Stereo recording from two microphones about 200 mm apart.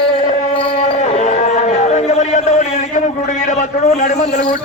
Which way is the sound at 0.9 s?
35° left (ahead or behind).